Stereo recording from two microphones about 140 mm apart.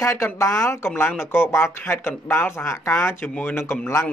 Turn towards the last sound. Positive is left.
turn(degrees=20)  # may be behind; listen again after turning